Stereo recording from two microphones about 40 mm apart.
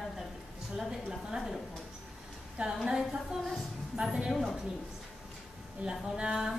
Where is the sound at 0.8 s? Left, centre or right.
Centre.